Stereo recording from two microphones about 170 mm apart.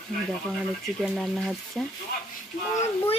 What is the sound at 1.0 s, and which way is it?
Speech, centre (ahead or behind).